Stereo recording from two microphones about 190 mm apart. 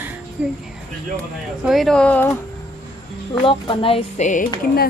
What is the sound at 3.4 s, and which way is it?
Speech, 30° left (ahead or behind).